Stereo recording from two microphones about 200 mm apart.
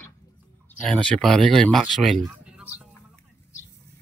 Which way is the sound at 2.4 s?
5° right (ahead or behind).